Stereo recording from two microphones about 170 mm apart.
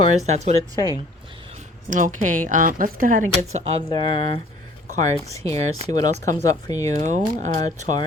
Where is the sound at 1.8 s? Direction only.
50° right (ahead or behind).